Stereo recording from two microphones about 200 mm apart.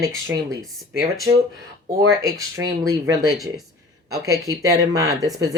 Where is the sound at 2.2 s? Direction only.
15° right (ahead or behind).